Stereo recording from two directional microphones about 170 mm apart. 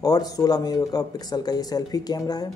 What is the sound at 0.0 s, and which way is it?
Speech, 20° left (ahead or behind).